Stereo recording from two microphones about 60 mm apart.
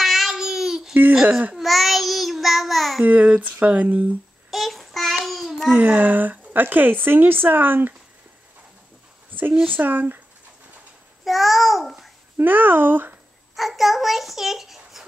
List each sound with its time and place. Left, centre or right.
0.0 s babbling: centre
1.2 s a woman's voice: right
1.5 s child singing: centre
3.1 s a woman's voice: right
4.5 s child singing: centre
5.7 s a woman's voice: right
9.3 s a sound: right
9.7 s speech: right
11.2 s a child's voice: centre
12.4 s speech: right
13.6 s a child's voice: centre